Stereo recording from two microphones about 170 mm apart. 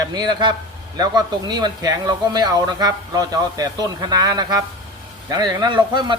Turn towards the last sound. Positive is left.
turn(degrees=-25)  # may be behind; listen again after turning